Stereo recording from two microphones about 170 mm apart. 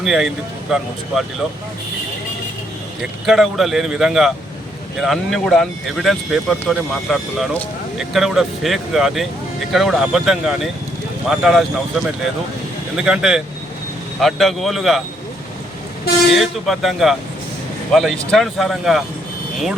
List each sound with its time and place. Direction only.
0.0 s speech: centre (ahead or behind)
3.2 s speech: centre (ahead or behind)
16.3 s speech: centre (ahead or behind)